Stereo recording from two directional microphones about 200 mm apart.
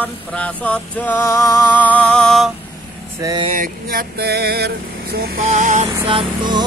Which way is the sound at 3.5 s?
45° right (ahead or behind).